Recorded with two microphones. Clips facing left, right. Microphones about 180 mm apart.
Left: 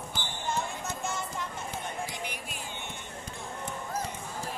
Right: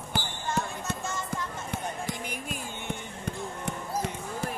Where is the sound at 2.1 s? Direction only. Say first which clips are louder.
Right 3 dB; 45° right (ahead or behind).